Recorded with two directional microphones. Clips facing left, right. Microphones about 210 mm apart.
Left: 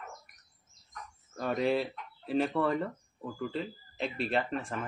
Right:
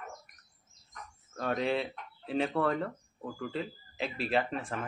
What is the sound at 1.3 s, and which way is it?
Speech, centre (ahead or behind).